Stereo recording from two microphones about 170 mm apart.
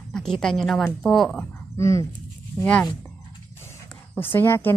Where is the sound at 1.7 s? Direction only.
15° left (ahead or behind).